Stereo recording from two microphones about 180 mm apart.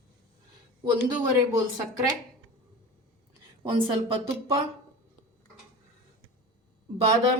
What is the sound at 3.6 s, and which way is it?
Speech, 25° right (ahead or behind).